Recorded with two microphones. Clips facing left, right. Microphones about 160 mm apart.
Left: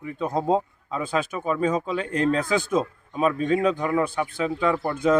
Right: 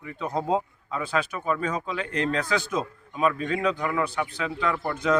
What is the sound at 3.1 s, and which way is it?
Speech, 35° left (ahead or behind).